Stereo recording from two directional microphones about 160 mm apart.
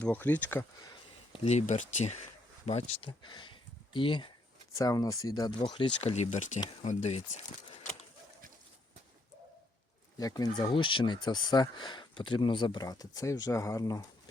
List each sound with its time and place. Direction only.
0.0 s speech: 10° left (ahead or behind)
1.3 s speech: 45° left (ahead or behind)
10.2 s speech: 25° left (ahead or behind)